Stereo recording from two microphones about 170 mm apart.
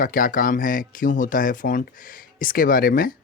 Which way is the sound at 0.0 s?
55° left (ahead or behind).